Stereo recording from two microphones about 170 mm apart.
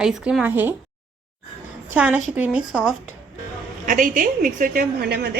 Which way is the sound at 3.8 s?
55° right (ahead or behind).